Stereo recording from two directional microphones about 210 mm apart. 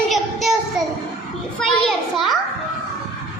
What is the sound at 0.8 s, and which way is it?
Speech, centre (ahead or behind).